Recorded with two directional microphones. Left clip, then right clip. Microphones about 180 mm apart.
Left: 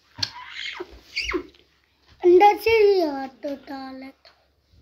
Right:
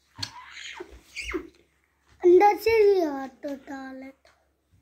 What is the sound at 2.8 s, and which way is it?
A child's voice, centre (ahead or behind).